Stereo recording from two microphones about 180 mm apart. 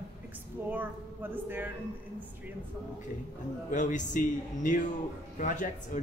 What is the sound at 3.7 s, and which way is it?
Speech, 45° left (ahead or behind).